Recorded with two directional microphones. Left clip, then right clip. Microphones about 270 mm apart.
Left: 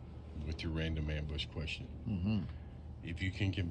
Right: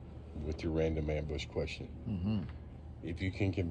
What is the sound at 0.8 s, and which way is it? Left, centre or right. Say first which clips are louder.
Speech: right 10 dB; centre.